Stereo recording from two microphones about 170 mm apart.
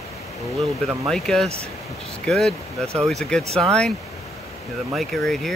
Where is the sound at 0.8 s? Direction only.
Centre (ahead or behind).